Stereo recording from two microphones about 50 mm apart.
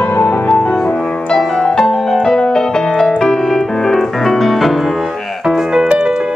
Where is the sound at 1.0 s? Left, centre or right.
Left; by 5.1 s centre.